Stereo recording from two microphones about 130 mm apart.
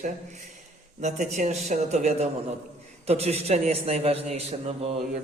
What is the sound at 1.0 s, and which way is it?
A man's voice, 65° right (ahead or behind).